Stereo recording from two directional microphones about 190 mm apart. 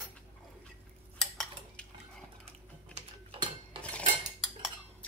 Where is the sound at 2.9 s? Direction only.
30° right (ahead or behind).